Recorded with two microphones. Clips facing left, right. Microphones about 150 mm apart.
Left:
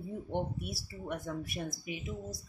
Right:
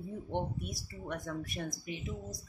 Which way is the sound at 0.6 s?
5° left (ahead or behind).